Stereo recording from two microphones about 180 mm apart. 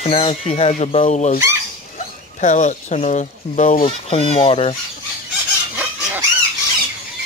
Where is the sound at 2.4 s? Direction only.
40° left (ahead or behind).